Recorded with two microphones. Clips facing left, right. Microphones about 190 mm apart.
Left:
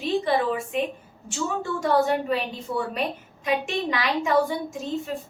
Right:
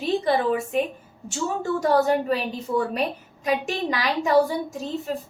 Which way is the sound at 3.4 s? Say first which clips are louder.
Right 1 dB; 40° right (ahead or behind).